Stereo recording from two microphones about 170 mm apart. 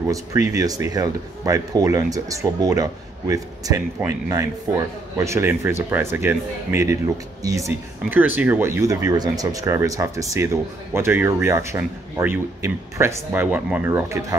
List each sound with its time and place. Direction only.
0.0 s speech: 20° right (ahead or behind)